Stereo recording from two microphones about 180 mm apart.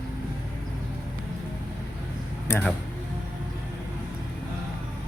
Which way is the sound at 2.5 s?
10° left (ahead or behind).